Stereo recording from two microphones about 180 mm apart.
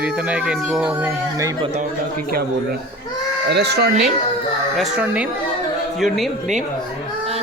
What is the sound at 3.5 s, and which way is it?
Speech, 70° right (ahead or behind).